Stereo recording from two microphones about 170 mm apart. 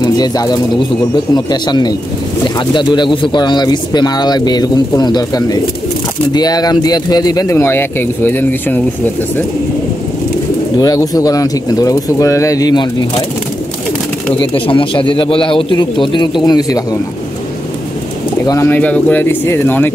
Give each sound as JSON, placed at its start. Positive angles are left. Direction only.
{"t": 0.0, "sound": "speech", "side_deg": 20}
{"t": 10.8, "sound": "speech", "side_deg": 20}
{"t": 14.4, "sound": "speech", "side_deg": 30}
{"t": 18.5, "sound": "speech", "side_deg": 15}